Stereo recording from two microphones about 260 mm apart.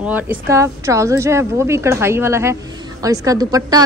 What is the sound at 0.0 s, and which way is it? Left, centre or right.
A woman's voice, centre.